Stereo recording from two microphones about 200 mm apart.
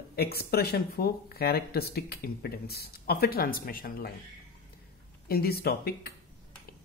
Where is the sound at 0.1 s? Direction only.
50° left (ahead or behind).